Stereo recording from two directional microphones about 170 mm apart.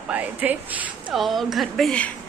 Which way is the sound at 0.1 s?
10° right (ahead or behind).